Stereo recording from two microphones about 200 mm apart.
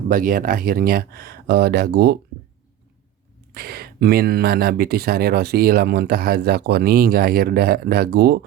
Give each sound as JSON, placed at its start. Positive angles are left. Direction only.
{"t": 0.1, "sound": "speech", "side_deg": -45}
{"t": 3.5, "sound": "speech", "side_deg": -50}